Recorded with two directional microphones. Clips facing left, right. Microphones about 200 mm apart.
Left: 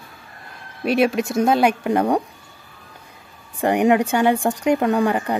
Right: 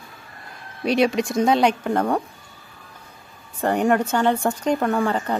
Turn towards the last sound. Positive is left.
turn(degrees=15)  # may be behind; listen again after turning